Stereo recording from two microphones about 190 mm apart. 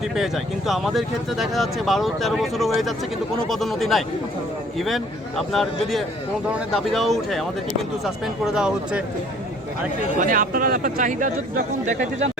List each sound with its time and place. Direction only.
0.2 s speech: centre (ahead or behind)
8.5 s speech: 5° right (ahead or behind)
10.2 s speech: 45° right (ahead or behind)